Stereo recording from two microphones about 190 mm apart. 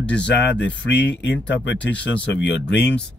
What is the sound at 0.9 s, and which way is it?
Speech, 65° left (ahead or behind).